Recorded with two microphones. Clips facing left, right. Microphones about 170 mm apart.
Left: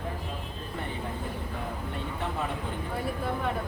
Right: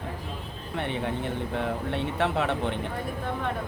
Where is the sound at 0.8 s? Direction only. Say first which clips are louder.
Right 7 dB; 75° right (ahead or behind).